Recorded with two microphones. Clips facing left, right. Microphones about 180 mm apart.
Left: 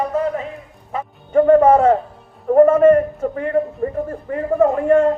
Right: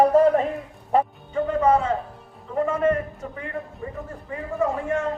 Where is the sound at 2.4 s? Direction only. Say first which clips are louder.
Left 12 dB; 55° left (ahead or behind).